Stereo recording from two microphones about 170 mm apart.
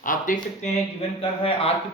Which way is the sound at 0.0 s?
50° left (ahead or behind).